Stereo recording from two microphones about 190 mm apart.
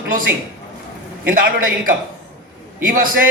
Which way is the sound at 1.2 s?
50° right (ahead or behind).